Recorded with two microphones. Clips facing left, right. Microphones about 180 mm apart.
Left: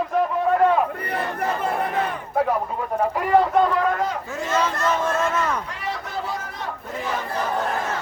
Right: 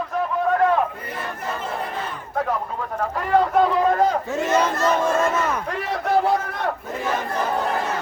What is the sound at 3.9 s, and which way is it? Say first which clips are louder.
Crowd: right 5 dB; 30° right (ahead or behind).